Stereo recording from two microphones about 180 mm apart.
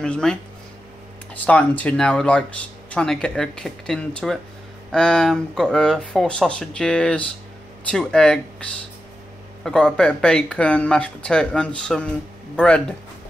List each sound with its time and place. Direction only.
0.0 s speech: 5° left (ahead or behind)